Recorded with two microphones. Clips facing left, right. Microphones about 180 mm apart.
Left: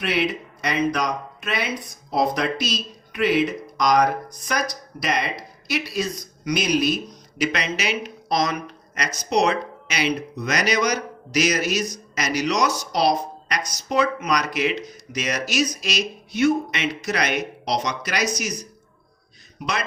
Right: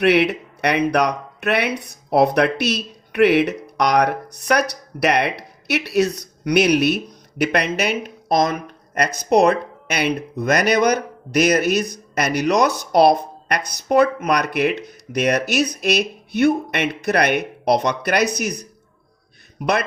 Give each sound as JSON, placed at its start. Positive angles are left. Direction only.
{"t": 0.0, "sound": "a man's voice", "side_deg": -70}